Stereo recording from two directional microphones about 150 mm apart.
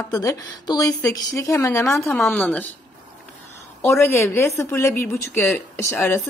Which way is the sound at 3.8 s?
15° left (ahead or behind).